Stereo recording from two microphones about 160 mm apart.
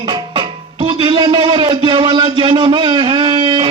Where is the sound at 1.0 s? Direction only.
30° right (ahead or behind).